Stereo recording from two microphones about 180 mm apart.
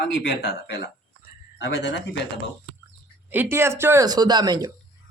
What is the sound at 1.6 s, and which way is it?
Speech, 75° left (ahead or behind).